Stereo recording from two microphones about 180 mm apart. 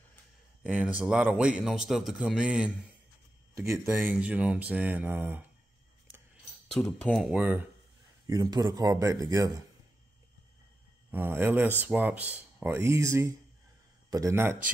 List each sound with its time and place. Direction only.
0.7 s speech: 10° right (ahead or behind)
6.7 s speech: 5° left (ahead or behind)
8.3 s speech: 20° right (ahead or behind)
11.1 s speech: 10° right (ahead or behind)